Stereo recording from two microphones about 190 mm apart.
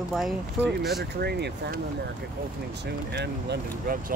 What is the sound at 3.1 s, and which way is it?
Speech, 60° right (ahead or behind).